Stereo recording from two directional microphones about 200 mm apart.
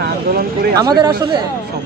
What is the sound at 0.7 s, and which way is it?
Speech, 20° right (ahead or behind).